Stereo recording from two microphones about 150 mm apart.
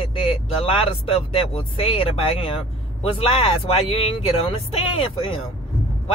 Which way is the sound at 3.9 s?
40° left (ahead or behind).